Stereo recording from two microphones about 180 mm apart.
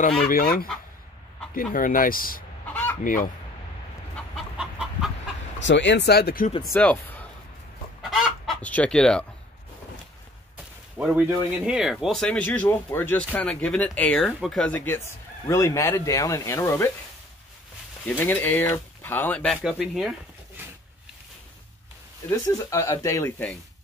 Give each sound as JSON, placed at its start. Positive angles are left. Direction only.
{"t": 0.2, "sound": "speech", "side_deg": 55}
{"t": 2.7, "sound": "fowl", "side_deg": 10}
{"t": 3.0, "sound": "speech", "side_deg": 50}
{"t": 4.4, "sound": "chicken", "side_deg": -5}
{"t": 5.6, "sound": "speech", "side_deg": 80}
{"t": 6.7, "sound": "speech", "side_deg": 10}
{"t": 8.0, "sound": "chicken", "side_deg": 0}
{"t": 11.0, "sound": "speech", "side_deg": -5}
{"t": 18.0, "sound": "speech", "side_deg": 10}
{"t": 22.3, "sound": "speech", "side_deg": 15}